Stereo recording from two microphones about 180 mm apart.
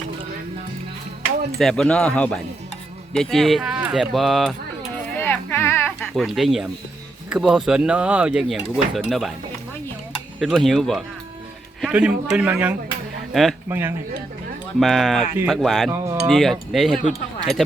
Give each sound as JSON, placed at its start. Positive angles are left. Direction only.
{"t": 1.5, "sound": "speech", "side_deg": 5}
{"t": 5.2, "sound": "a sound", "side_deg": 10}
{"t": 6.0, "sound": "speech", "side_deg": 0}
{"t": 10.4, "sound": "speech", "side_deg": 0}
{"t": 13.7, "sound": "speech", "side_deg": -10}
{"t": 14.8, "sound": "speech", "side_deg": 0}
{"t": 15.9, "sound": "speech", "side_deg": -15}
{"t": 16.2, "sound": "speech", "side_deg": 0}